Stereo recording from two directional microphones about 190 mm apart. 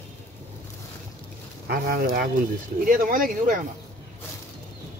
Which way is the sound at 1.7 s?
50° right (ahead or behind).